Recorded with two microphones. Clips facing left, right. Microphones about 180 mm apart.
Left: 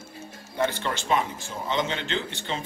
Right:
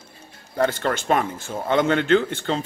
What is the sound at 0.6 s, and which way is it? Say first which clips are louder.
Speech: right 5 dB; 50° right (ahead or behind).